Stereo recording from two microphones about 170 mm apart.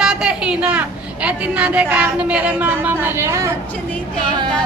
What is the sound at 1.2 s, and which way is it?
A woman's voice, 10° right (ahead or behind).